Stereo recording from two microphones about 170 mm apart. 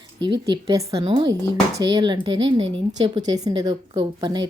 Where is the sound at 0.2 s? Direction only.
25° right (ahead or behind).